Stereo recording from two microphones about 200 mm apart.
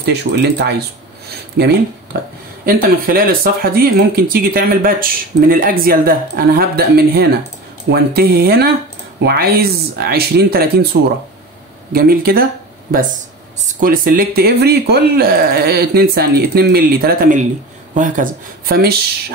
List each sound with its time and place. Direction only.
0.0 s speech: 55° right (ahead or behind)
13.7 s speech: 40° right (ahead or behind)